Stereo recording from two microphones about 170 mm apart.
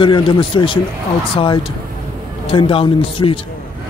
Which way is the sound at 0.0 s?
30° left (ahead or behind).